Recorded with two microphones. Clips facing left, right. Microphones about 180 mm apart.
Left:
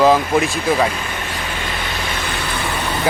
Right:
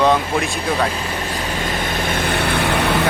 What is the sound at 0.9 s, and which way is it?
Vehicle, 35° right (ahead or behind).